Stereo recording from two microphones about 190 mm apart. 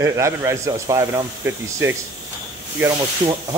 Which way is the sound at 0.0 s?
15° right (ahead or behind).